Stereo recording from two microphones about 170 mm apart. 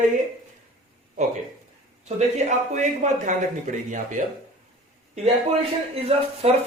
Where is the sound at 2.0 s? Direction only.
45° right (ahead or behind).